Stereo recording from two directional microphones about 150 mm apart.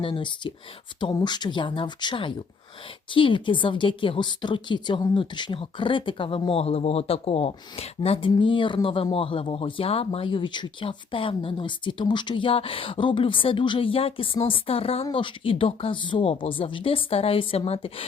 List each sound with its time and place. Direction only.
0.0 s speech: 35° left (ahead or behind)